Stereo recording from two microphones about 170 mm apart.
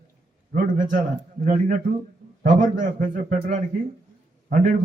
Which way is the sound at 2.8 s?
50° right (ahead or behind).